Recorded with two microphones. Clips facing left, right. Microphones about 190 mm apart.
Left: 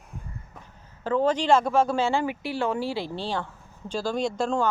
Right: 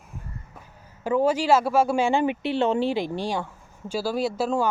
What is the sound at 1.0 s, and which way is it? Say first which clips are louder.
Speech: right 2 dB; 10° right (ahead or behind).